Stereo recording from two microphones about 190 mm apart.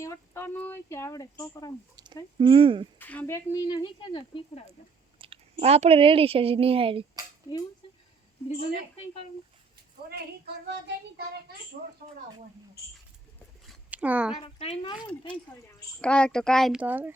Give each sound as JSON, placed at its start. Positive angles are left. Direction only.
{"t": 0.0, "sound": "speech", "side_deg": 15}
{"t": 2.4, "sound": "speech", "side_deg": -30}
{"t": 3.0, "sound": "speech", "side_deg": 10}
{"t": 5.2, "sound": "speech", "side_deg": -30}
{"t": 10.1, "sound": "speech", "side_deg": -60}
{"t": 13.7, "sound": "a sound", "side_deg": -5}
{"t": 14.4, "sound": "speech", "side_deg": 30}
{"t": 16.0, "sound": "speech", "side_deg": 5}